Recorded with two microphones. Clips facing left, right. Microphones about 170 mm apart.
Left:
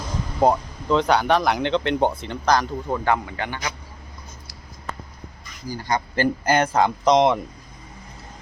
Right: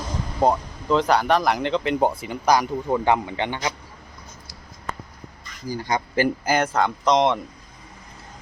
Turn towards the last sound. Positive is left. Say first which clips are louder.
# left 2 dB
turn(degrees=0)  # may be behind; listen again after turning